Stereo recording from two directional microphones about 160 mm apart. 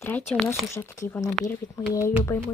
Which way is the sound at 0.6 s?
20° left (ahead or behind).